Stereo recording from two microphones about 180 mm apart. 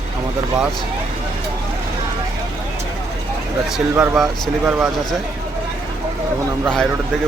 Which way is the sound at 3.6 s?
Centre (ahead or behind).